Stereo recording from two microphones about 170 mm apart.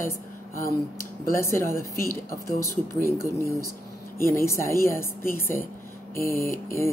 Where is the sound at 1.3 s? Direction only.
15° left (ahead or behind).